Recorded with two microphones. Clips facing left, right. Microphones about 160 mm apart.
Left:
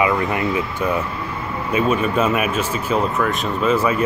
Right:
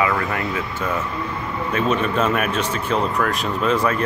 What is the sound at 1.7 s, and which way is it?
Speech, 10° left (ahead or behind).